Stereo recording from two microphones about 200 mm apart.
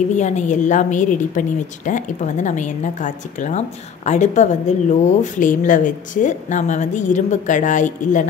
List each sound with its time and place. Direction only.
0.1 s speech: 35° left (ahead or behind)